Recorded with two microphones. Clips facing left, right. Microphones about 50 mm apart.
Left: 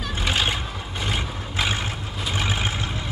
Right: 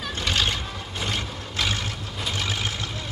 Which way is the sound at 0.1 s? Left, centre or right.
Centre.